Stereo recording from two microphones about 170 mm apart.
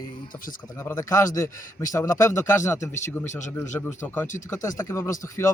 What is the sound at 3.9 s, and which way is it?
A man's voice, 15° left (ahead or behind).